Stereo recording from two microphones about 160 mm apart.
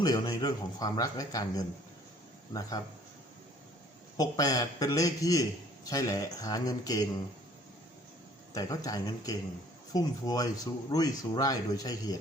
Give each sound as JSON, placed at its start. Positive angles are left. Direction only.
{"t": 0.0, "sound": "a man's voice", "side_deg": 25}
{"t": 4.2, "sound": "a man's voice", "side_deg": 25}
{"t": 8.5, "sound": "a man's voice", "side_deg": 20}